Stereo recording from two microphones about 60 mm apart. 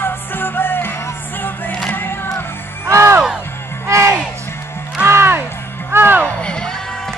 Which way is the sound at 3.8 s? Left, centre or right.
Right.